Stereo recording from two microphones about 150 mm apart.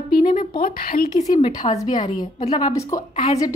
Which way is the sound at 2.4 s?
45° left (ahead or behind).